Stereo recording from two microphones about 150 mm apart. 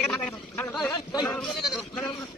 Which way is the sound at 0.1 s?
10° left (ahead or behind).